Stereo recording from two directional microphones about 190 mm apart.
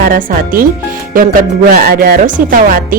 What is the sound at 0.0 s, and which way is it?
Speech, 45° right (ahead or behind).